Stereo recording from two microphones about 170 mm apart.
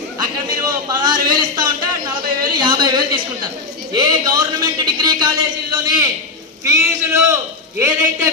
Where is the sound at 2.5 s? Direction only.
25° right (ahead or behind).